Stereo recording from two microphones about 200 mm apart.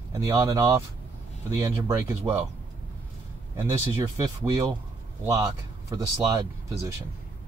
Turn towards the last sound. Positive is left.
turn(degrees=-15)  # may be behind; listen again after turning